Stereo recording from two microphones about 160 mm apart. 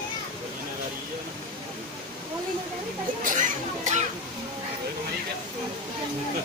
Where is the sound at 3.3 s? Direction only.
50° right (ahead or behind).